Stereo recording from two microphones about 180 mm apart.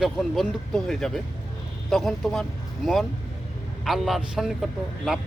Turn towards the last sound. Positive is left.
turn(degrees=0)  # may be behind; listen again after turning